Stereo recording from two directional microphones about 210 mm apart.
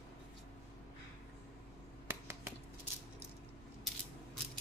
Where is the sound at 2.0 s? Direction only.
10° right (ahead or behind).